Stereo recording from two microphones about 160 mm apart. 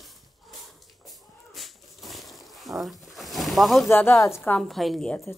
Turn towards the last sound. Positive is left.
turn(degrees=0)  # may be behind; listen again after turning